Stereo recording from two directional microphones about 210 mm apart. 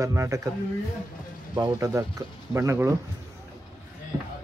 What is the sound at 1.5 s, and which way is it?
Speech, 15° right (ahead or behind).